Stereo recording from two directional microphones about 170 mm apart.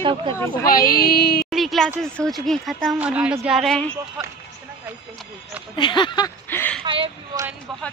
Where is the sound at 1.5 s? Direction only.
Centre (ahead or behind).